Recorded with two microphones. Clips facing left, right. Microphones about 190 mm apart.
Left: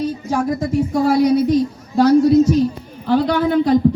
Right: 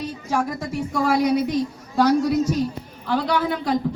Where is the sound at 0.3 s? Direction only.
35° left (ahead or behind).